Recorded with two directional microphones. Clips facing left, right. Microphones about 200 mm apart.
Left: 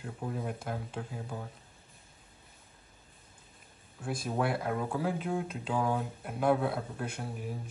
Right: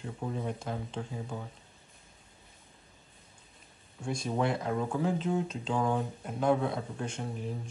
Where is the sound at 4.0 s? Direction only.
5° left (ahead or behind).